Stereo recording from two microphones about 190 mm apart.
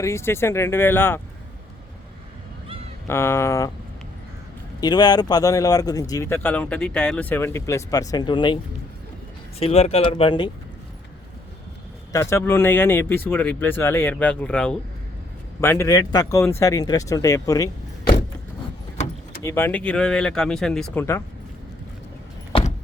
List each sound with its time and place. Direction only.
0.0 s speech: 15° left (ahead or behind)
3.1 s speech: 15° left (ahead or behind)
4.8 s speech: 20° left (ahead or behind)
9.6 s speech: 30° left (ahead or behind)
12.1 s speech: 15° left (ahead or behind)
19.4 s speech: 15° left (ahead or behind)